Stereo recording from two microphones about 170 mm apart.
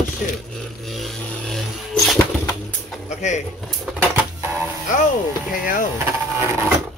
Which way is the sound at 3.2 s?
45° left (ahead or behind).